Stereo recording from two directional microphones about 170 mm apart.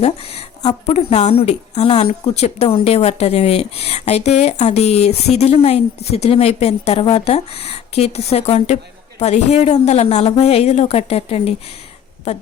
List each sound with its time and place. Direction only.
0.0 s a woman's voice: 35° left (ahead or behind)